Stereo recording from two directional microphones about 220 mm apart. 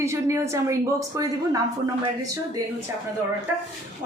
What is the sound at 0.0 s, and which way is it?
A woman's voice, 10° right (ahead or behind).